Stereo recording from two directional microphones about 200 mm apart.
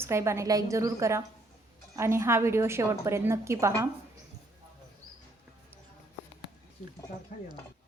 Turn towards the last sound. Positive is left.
turn(degrees=45)  # may be behind; listen again after turning